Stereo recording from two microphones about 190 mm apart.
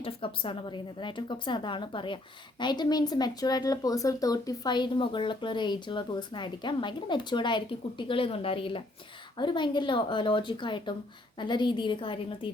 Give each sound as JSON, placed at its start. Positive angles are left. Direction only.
{"t": 0.0, "sound": "speech", "side_deg": 25}